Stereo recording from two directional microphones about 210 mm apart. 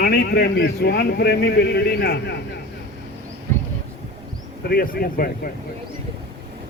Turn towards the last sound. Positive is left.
turn(degrees=45)  # may be behind; listen again after turning